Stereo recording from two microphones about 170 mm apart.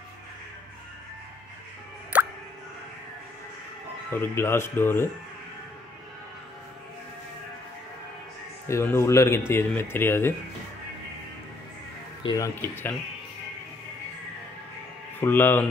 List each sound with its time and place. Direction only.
2.1 s music: 10° right (ahead or behind)
4.1 s speech: 15° left (ahead or behind)
8.6 s speech: 15° left (ahead or behind)
12.2 s speech: 30° left (ahead or behind)
12.6 s speech: 15° left (ahead or behind)
15.1 s speech: 10° left (ahead or behind)